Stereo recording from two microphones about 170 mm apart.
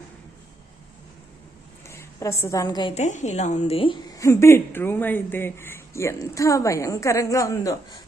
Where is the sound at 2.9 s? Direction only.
45° left (ahead or behind).